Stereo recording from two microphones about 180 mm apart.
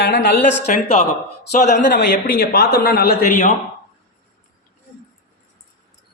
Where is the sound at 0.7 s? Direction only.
35° left (ahead or behind).